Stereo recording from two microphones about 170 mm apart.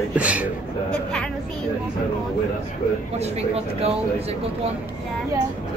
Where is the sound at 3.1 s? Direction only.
40° right (ahead or behind).